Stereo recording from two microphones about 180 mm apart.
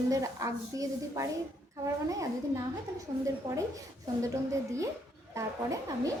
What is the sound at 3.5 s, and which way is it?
Speech, 25° right (ahead or behind).